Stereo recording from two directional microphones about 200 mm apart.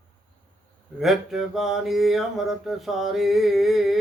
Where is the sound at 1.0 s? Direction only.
Centre (ahead or behind).